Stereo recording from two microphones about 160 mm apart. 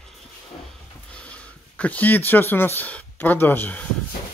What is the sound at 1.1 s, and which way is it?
Speech, 5° left (ahead or behind).